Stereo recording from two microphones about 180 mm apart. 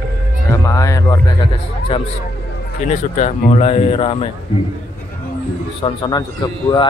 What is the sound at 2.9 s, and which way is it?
Speech, 40° left (ahead or behind).